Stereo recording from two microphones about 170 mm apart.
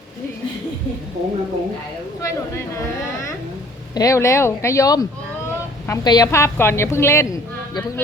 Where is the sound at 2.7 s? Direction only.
20° left (ahead or behind).